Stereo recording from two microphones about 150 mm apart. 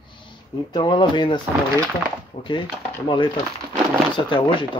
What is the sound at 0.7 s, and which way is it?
Speech, 30° left (ahead or behind).